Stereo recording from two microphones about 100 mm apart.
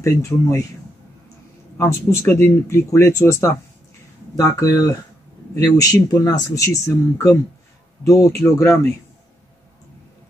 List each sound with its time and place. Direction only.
0.0 s speech: 30° left (ahead or behind)
1.8 s speech: 25° left (ahead or behind)